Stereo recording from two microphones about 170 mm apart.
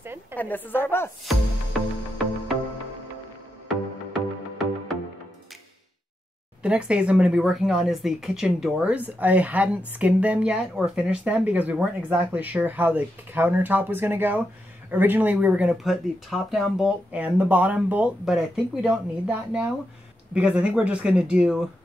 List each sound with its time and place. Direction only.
0.0 s a sound: 10° right (ahead or behind)
0.4 s a woman's voice: 10° left (ahead or behind)
1.2 s music: centre (ahead or behind)
6.6 s speech: 5° right (ahead or behind)